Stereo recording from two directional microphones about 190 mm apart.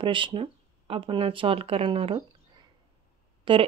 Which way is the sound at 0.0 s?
25° right (ahead or behind).